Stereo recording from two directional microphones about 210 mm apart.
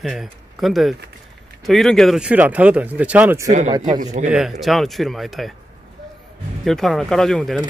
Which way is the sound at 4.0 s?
35° right (ahead or behind).